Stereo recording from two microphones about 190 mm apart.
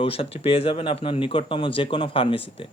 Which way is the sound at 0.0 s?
30° left (ahead or behind).